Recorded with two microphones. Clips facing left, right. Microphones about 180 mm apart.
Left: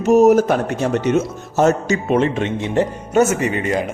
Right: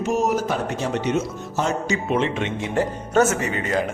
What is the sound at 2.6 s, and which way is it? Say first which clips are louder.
Speech: left 4 dB; 25° left (ahead or behind).